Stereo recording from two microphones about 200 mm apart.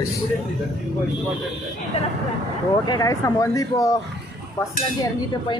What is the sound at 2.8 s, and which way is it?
Speech, 15° left (ahead or behind).